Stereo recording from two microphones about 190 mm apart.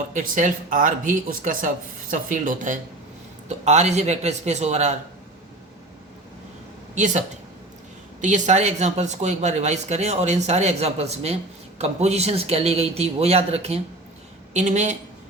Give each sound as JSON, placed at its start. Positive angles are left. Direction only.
{"t": 0.1, "sound": "speech", "side_deg": -45}
{"t": 6.9, "sound": "speech", "side_deg": -40}